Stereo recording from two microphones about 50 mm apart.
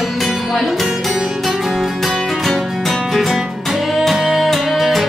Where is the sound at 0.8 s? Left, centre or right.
Centre.